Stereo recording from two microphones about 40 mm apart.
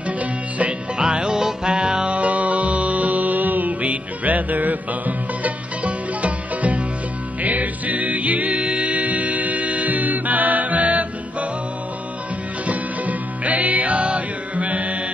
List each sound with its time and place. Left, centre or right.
0.2 s music: right
0.9 s music: right
2.1 s music: right
12.6 s music: right